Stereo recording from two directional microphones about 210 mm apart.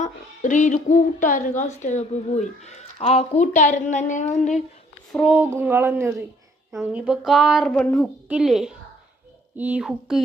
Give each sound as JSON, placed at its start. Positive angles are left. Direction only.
{"t": 0.0, "sound": "a woman's voice", "side_deg": 35}
{"t": 5.1, "sound": "a sound", "side_deg": -5}
{"t": 6.7, "sound": "speech", "side_deg": -5}